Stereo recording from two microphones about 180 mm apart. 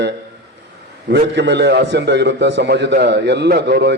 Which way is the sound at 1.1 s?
75° right (ahead or behind).